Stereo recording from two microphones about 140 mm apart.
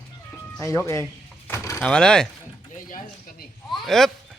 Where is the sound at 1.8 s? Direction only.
5° left (ahead or behind).